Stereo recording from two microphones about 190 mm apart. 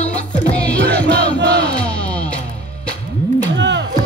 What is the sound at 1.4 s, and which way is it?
Crowd, 65° right (ahead or behind).